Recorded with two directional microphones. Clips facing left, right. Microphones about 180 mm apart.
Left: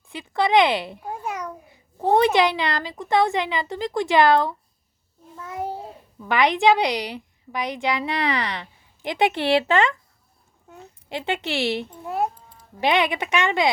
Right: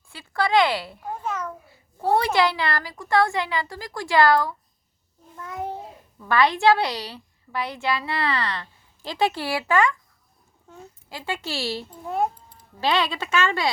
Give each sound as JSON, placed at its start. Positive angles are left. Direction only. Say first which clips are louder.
{"t": 0.1, "sound": "a child's voice", "louder": "left 2 dB", "side_deg": 20}
{"t": 5.4, "sound": "a sound", "louder": "left 1 dB", "side_deg": 10}
{"t": 6.2, "sound": "a woman's voice", "louder": "left 1 dB", "side_deg": 20}
{"t": 11.1, "sound": "a child's voice", "louder": "left 4 dB", "side_deg": 20}
{"t": 12.0, "sound": "a child's voice", "louder": "right 1 dB", "side_deg": 5}
{"t": 12.8, "sound": "a woman's voice", "louder": "left 3 dB", "side_deg": 20}